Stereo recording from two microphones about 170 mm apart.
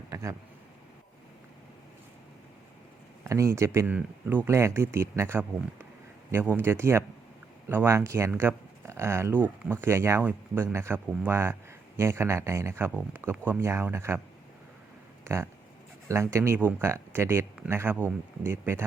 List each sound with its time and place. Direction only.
0.1 s speech: 15° right (ahead or behind)
3.2 s speech: 20° right (ahead or behind)
15.2 s a sound: 15° right (ahead or behind)
16.0 s speech: 15° right (ahead or behind)